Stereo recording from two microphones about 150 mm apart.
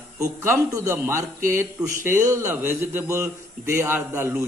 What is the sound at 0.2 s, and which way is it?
A man's voice, 20° right (ahead or behind).